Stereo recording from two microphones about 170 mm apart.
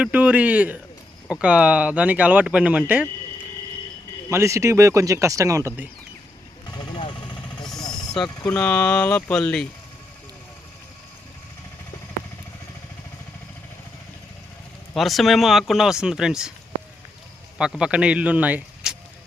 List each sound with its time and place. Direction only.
0.0 s speech: 10° right (ahead or behind)
4.3 s speech: 15° right (ahead or behind)
6.7 s vehicle: 25° left (ahead or behind)
7.9 s speech: centre (ahead or behind)
14.9 s speech: centre (ahead or behind)
17.6 s speech: 5° right (ahead or behind)